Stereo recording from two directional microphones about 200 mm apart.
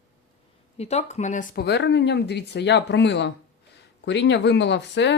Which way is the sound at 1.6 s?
60° left (ahead or behind).